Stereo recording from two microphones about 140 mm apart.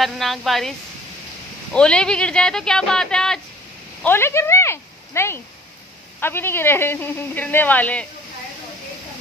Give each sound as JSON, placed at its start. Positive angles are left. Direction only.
{"t": 0.0, "sound": "speech", "side_deg": 0}
{"t": 4.0, "sound": "speech", "side_deg": 15}